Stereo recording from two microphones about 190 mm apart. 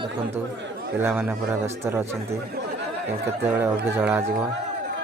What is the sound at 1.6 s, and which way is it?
Speech, 15° right (ahead or behind).